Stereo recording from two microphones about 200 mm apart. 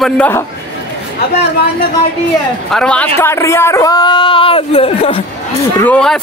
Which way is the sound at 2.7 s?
5° left (ahead or behind).